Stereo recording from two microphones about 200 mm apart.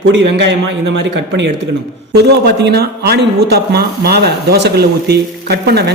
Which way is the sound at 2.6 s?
55° right (ahead or behind).